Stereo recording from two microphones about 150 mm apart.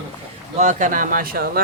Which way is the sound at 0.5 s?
55° right (ahead or behind).